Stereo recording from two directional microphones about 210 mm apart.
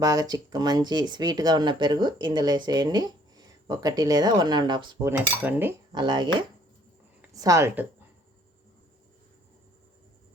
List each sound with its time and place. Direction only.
0.0 s speech: 15° right (ahead or behind)
5.9 s speech: 20° right (ahead or behind)